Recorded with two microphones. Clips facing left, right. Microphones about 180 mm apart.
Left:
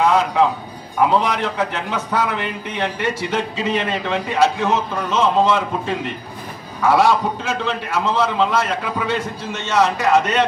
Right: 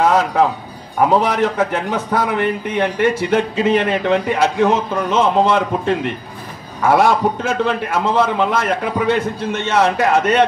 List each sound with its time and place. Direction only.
0.0 s a man's voice: 40° right (ahead or behind)